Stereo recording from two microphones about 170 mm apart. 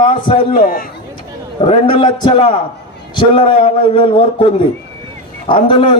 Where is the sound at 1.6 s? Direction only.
30° left (ahead or behind).